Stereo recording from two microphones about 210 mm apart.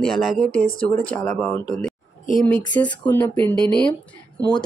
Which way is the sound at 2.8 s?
10° left (ahead or behind).